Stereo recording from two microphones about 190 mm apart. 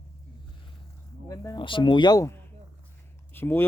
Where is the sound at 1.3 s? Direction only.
15° left (ahead or behind).